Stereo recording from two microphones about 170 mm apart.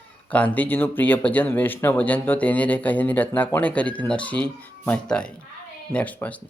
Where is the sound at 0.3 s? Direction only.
10° left (ahead or behind).